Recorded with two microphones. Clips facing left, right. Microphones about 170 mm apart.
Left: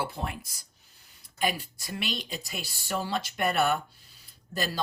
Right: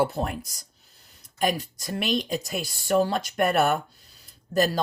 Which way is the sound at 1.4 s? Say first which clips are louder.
Right 4 dB; 40° right (ahead or behind).